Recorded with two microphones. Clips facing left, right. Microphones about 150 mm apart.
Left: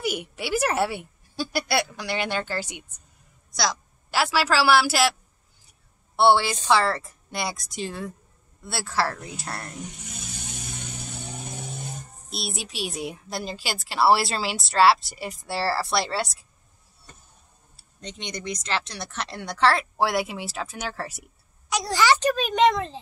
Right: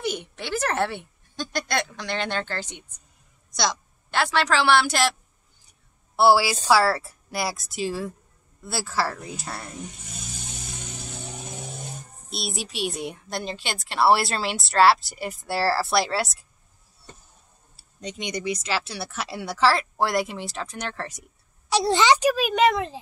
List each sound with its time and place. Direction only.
0.0 s a woman's voice: 10° left (ahead or behind)
6.1 s a woman's voice: 5° right (ahead or behind)
12.3 s a woman's voice: centre (ahead or behind)
17.7 s a woman's voice: 10° right (ahead or behind); by 21.3 s 5° left (ahead or behind)
21.6 s a woman's voice: 30° right (ahead or behind)
22.2 s a woman's voice: 5° right (ahead or behind)